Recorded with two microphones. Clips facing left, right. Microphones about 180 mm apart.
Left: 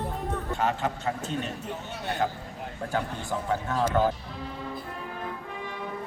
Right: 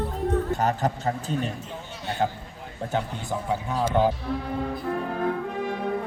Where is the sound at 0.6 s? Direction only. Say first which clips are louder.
Right 3 dB; 40° right (ahead or behind).